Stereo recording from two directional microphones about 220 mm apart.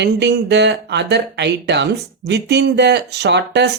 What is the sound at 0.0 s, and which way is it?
Speech, 50° right (ahead or behind).